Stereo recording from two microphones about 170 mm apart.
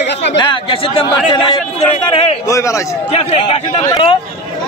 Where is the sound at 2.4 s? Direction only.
20° left (ahead or behind).